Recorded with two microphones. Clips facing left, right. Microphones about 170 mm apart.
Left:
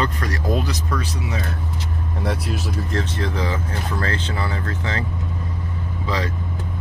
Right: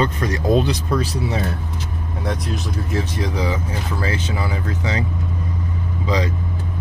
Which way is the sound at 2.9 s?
10° right (ahead or behind).